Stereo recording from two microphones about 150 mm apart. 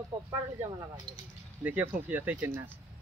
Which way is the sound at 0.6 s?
25° right (ahead or behind).